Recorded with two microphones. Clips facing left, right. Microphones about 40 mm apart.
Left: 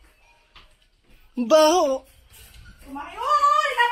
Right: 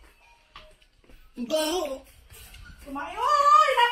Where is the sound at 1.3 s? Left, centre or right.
Left.